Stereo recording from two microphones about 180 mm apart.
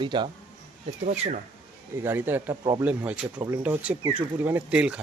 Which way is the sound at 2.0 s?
10° right (ahead or behind).